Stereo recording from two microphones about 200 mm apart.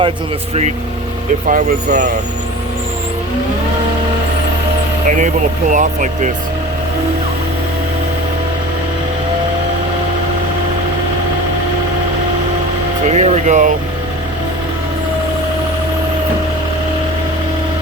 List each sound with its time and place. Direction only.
1.5 s speech: 40° right (ahead or behind)
5.0 s speech: 40° right (ahead or behind)
13.1 s speech: 35° right (ahead or behind)